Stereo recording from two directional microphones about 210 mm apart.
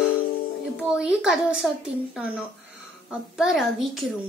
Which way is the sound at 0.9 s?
5° right (ahead or behind).